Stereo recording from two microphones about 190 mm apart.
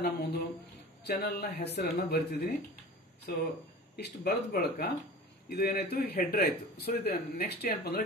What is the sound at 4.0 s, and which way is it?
A man's voice, 55° left (ahead or behind).